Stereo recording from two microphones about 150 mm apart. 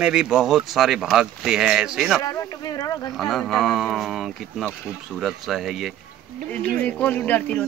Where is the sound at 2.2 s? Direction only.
25° left (ahead or behind).